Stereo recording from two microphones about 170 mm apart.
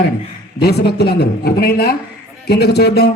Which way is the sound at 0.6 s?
70° left (ahead or behind).